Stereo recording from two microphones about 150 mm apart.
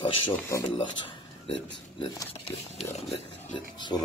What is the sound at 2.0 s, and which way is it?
Speech, 25° left (ahead or behind).